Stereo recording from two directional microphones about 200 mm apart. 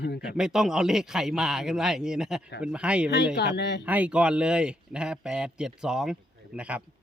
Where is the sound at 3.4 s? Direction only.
55° left (ahead or behind).